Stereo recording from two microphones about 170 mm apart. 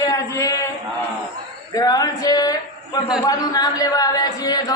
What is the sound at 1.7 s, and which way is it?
A man's voice, 20° left (ahead or behind).